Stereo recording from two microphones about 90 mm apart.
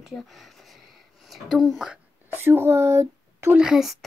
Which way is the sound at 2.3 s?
25° right (ahead or behind).